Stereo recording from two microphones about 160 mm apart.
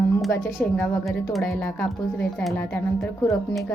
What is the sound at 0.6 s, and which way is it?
A woman's voice, 5° left (ahead or behind).